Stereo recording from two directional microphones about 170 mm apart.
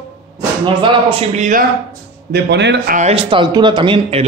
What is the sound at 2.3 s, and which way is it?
Speech, 80° right.